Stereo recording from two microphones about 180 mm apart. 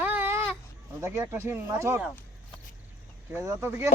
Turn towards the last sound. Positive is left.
turn(degrees=-15)  # may be behind; listen again after turning